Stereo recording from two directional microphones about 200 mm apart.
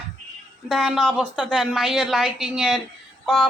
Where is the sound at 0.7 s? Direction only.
Centre (ahead or behind).